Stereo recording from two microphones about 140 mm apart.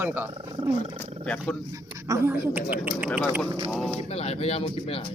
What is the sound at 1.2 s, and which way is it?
Speech, 5° left (ahead or behind).